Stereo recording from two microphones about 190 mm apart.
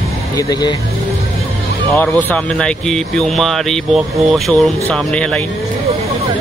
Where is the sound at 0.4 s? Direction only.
20° left (ahead or behind).